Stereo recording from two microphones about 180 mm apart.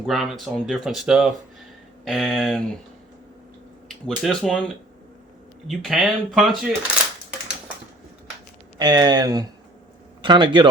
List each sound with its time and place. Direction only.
0.0 s speech: centre (ahead or behind)
3.8 s speech: centre (ahead or behind)
5.6 s speech: centre (ahead or behind)
8.8 s speech: 20° right (ahead or behind)